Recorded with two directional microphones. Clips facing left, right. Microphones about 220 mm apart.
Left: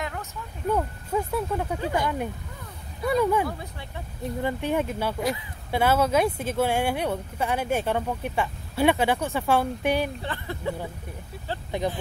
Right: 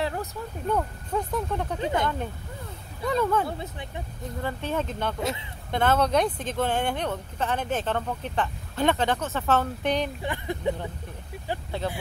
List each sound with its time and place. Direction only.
0.0 s a sound: 35° right (ahead or behind)
0.7 s speech: 5° left (ahead or behind)
1.8 s speech: 20° right (ahead or behind)
3.1 s speech: 10° left (ahead or behind)
10.2 s speech: 15° right (ahead or behind)